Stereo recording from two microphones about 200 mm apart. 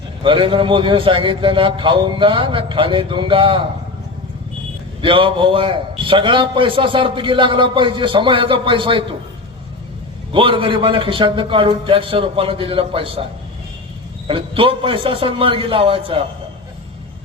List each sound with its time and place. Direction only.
0.2 s a man's voice: 25° right (ahead or behind)
5.0 s a man's voice: 25° right (ahead or behind)
10.3 s a man's voice: 25° right (ahead or behind)
14.3 s a man's voice: 25° right (ahead or behind)